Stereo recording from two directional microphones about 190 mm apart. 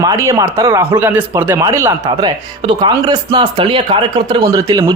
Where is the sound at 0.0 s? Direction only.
15° right (ahead or behind).